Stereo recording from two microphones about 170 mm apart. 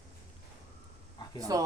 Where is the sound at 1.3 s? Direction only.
20° right (ahead or behind).